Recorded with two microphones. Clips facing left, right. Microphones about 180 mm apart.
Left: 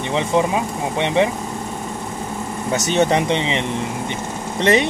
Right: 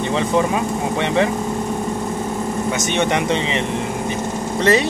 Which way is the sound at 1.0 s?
20° left (ahead or behind).